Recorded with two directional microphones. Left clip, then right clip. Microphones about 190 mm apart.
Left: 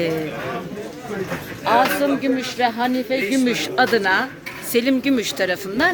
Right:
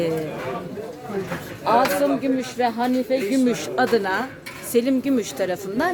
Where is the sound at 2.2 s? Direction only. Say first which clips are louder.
Left 2 dB; 15° right (ahead or behind).